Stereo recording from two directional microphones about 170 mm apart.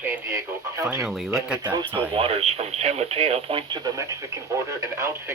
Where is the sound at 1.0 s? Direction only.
Centre (ahead or behind).